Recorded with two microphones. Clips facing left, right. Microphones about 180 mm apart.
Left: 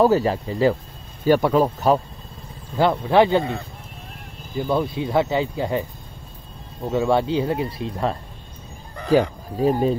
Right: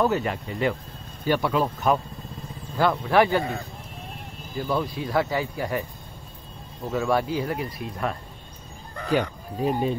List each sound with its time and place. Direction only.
0.0 s speech: 35° left (ahead or behind)
1.2 s speech: 45° left (ahead or behind)
2.8 s speech: 25° left (ahead or behind)
6.9 s speech: 25° left (ahead or behind)
9.6 s speech: 40° left (ahead or behind)